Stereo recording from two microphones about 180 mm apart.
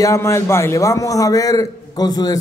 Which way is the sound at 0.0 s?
15° left (ahead or behind).